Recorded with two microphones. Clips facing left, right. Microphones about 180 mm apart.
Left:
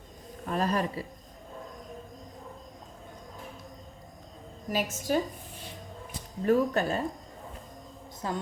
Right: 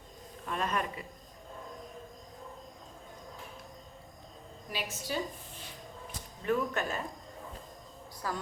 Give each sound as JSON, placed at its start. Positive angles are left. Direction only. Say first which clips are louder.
{"t": 0.4, "sound": "speech", "louder": "left 5 dB", "side_deg": 35}
{"t": 4.7, "sound": "a woman's voice", "louder": "left 9 dB", "side_deg": 45}
{"t": 6.4, "sound": "speech", "louder": "left 7 dB", "side_deg": 35}
{"t": 8.2, "sound": "a woman's voice", "louder": "left 4 dB", "side_deg": 25}